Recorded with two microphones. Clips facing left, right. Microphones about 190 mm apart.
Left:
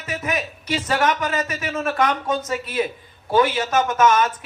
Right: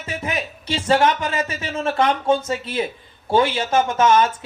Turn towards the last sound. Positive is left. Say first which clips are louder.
# right 1 dB
turn(degrees=-30)  # may be behind; listen again after turning